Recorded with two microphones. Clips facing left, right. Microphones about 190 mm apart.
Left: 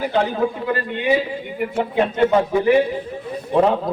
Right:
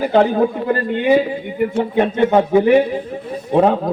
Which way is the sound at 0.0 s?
50° right (ahead or behind).